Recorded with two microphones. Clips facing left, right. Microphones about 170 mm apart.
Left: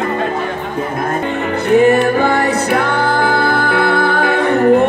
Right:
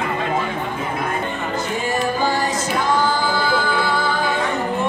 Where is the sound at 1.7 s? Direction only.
65° left (ahead or behind).